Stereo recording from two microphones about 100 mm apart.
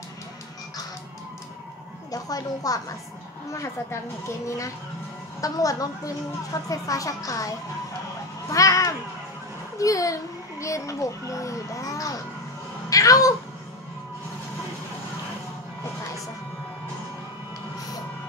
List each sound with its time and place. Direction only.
2.0 s a child's voice: 40° left (ahead or behind)
3.5 s a woman's voice: 25° left (ahead or behind)
5.4 s a child's voice: 35° left (ahead or behind)